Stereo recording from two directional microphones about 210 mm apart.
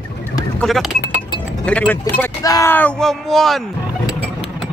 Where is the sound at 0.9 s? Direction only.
55° left (ahead or behind).